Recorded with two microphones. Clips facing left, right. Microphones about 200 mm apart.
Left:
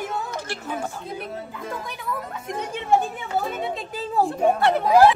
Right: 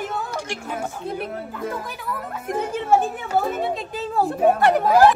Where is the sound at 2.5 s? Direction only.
5° right (ahead or behind).